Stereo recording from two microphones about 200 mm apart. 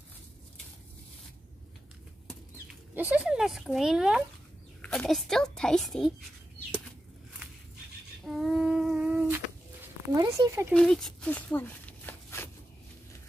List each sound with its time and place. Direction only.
2.5 s a child's voice: 10° right (ahead or behind)
8.4 s humming: centre (ahead or behind)
10.1 s speech: 20° right (ahead or behind)
10.7 s a sound: 5° left (ahead or behind)